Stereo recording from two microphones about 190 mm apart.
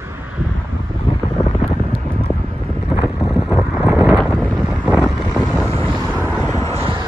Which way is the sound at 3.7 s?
Centre (ahead or behind).